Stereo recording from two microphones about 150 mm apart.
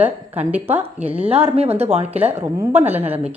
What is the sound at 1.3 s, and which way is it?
Speech, 40° right (ahead or behind).